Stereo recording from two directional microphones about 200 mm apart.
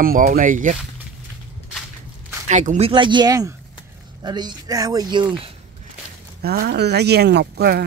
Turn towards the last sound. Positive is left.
turn(degrees=-55)  # may be behind; listen again after turning